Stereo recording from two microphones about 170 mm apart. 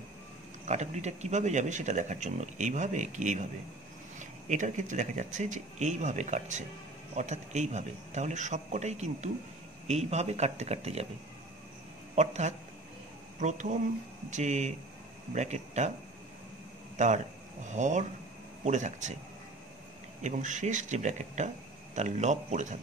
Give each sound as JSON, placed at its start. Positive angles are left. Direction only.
{"t": 0.7, "sound": "a man's voice", "side_deg": -40}
{"t": 12.2, "sound": "a man's voice", "side_deg": -45}
{"t": 16.9, "sound": "speech", "side_deg": -45}
{"t": 20.2, "sound": "speech", "side_deg": -45}